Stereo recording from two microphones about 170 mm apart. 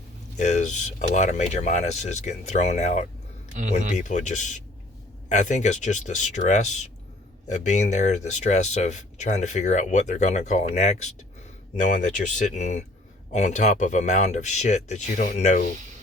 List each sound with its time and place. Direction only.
0.3 s speech: 45° left (ahead or behind)